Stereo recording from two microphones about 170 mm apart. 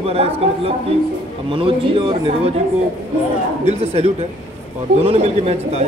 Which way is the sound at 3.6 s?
40° right (ahead or behind).